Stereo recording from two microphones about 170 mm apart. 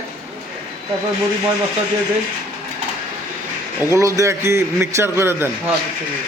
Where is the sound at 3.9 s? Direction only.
20° right (ahead or behind).